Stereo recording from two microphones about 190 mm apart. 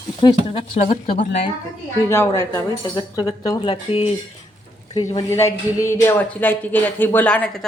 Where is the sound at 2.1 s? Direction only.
15° left (ahead or behind).